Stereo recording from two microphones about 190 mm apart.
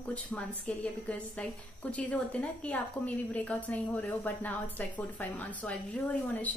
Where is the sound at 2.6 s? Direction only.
5° left (ahead or behind).